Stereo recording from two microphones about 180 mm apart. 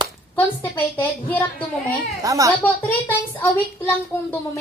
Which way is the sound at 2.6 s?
10° left (ahead or behind).